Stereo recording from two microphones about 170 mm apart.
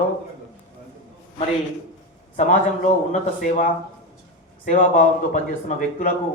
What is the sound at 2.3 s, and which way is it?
Speech, 50° left (ahead or behind).